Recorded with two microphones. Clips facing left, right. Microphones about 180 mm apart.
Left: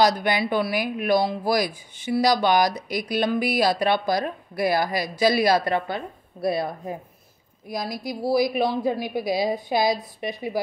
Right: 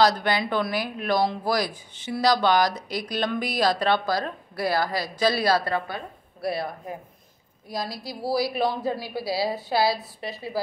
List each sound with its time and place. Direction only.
0.0 s speech: 15° left (ahead or behind)